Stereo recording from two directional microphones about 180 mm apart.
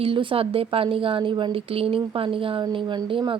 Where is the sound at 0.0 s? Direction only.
30° right (ahead or behind).